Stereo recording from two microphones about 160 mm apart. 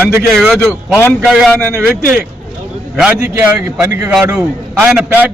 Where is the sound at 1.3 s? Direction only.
Centre (ahead or behind).